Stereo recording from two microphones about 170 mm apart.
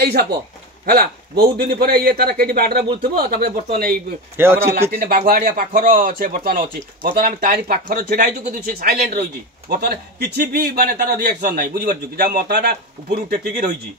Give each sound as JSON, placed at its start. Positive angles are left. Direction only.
{"t": 0.0, "sound": "speech", "side_deg": -65}
{"t": 4.4, "sound": "speech", "side_deg": -15}
{"t": 4.9, "sound": "speech", "side_deg": -55}
{"t": 9.7, "sound": "speech", "side_deg": -70}